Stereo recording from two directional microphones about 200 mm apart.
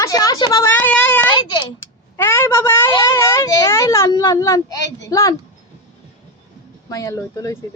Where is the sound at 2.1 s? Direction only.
10° left (ahead or behind).